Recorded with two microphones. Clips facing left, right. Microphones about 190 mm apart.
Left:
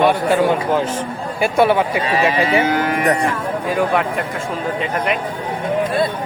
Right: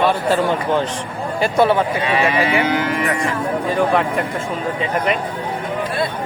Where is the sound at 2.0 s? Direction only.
35° left (ahead or behind).